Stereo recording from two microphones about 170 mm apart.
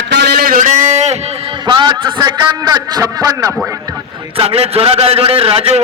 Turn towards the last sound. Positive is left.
turn(degrees=-35)  # may be behind; listen again after turning